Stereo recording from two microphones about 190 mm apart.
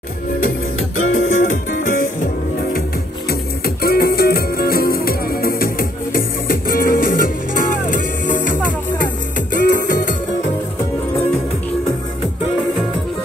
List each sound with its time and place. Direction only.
0.7 s music: 90° left
1.1 s music: 40° left (ahead or behind)
3.3 s music: 55° left (ahead or behind)